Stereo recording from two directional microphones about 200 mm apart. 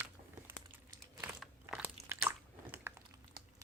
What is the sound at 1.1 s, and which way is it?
Biting, 10° right (ahead or behind).